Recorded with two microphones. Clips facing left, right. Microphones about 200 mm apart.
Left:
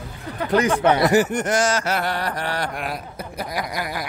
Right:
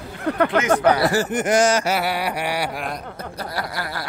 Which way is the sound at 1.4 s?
15° right (ahead or behind).